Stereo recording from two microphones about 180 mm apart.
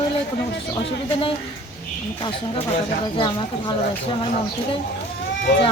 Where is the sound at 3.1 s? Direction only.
25° left (ahead or behind).